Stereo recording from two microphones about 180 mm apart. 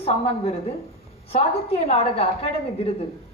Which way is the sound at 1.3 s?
35° left (ahead or behind).